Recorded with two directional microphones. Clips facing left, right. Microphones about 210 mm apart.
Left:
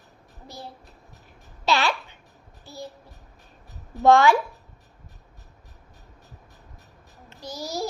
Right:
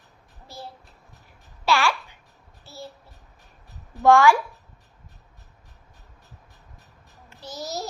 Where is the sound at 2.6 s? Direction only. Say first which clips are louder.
Left 2 dB; 15° left (ahead or behind).